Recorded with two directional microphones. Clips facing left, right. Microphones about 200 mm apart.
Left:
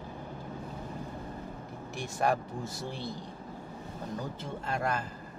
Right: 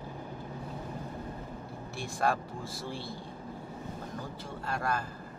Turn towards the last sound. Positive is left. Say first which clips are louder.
# left 1 dB
turn(degrees=20)  # may be behind; listen again after turning